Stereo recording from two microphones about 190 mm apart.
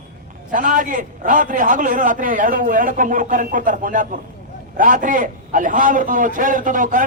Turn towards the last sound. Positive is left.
turn(degrees=-45)  # may be behind; listen again after turning